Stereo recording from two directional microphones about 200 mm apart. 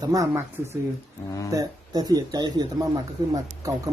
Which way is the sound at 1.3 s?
15° left (ahead or behind).